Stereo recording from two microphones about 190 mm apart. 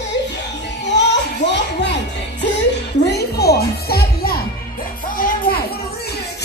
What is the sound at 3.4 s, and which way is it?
Music, 55° left (ahead or behind).